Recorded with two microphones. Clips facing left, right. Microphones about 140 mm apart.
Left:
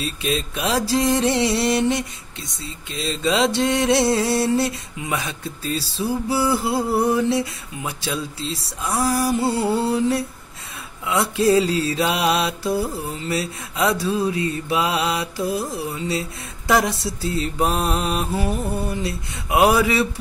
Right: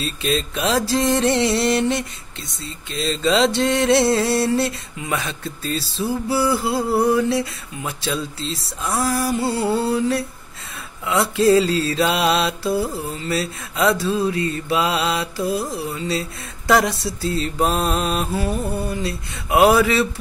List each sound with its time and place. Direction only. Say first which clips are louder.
0.0 s mantra: right 2 dB; 10° left (ahead or behind)
6.7 s a sound: right 2 dB; 20° left (ahead or behind)
11.1 s mantra: right 2 dB; 15° left (ahead or behind)